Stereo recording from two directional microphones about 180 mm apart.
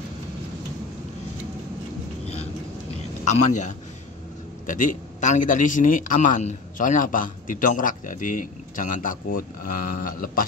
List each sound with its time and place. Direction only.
3.3 s a man's voice: 40° left (ahead or behind)